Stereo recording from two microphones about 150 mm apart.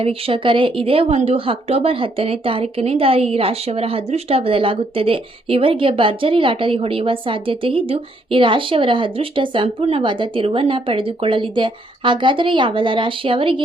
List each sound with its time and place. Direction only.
0.0 s a woman's voice: 40° right (ahead or behind)